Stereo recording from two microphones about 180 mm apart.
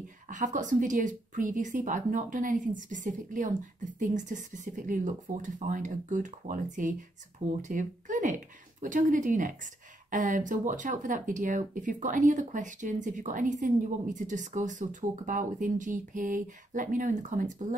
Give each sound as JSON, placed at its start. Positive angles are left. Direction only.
{"t": 0.3, "sound": "speech", "side_deg": -45}